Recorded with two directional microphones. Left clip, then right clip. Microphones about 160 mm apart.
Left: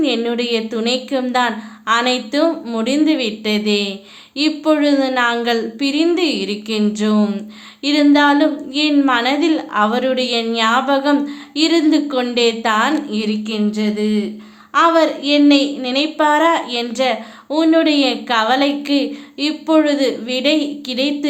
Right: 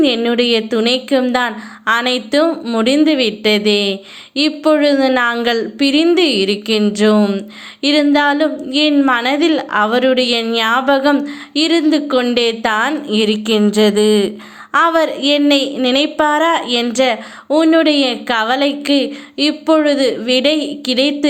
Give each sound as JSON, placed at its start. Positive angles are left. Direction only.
{"t": 0.0, "sound": "a woman's voice", "side_deg": -30}
{"t": 14.7, "sound": "a woman's voice", "side_deg": -50}